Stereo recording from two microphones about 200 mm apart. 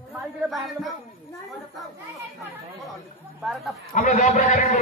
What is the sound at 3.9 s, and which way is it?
Speech, 35° left (ahead or behind).